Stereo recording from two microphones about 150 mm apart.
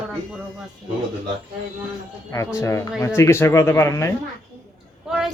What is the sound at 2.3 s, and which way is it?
Speech, 20° left (ahead or behind).